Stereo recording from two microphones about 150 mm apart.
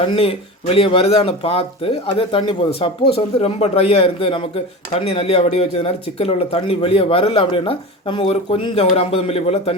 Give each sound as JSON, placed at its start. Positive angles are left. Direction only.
{"t": 0.0, "sound": "speech", "side_deg": 40}